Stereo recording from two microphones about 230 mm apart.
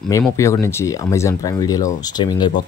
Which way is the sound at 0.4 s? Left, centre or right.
Centre.